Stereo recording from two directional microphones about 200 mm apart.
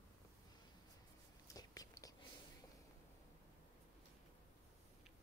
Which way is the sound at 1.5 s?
20° left (ahead or behind).